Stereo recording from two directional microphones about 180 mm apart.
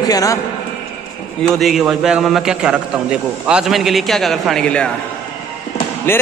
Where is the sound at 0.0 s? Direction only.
20° left (ahead or behind).